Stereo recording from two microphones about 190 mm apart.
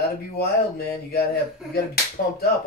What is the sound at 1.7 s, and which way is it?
Finger snapping, 55° left (ahead or behind).